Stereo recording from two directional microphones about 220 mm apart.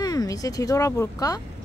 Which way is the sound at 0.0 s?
15° left (ahead or behind).